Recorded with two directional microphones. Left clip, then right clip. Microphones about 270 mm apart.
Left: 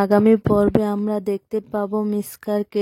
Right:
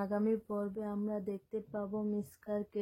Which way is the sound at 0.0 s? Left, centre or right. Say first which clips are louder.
Left 19 dB; left.